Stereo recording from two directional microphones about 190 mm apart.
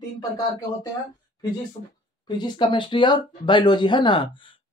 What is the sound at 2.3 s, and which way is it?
Speech, 25° left (ahead or behind).